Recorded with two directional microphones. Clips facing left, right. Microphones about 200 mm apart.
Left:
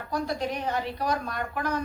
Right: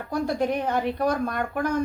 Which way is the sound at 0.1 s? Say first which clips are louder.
Right 5 dB; 50° right (ahead or behind).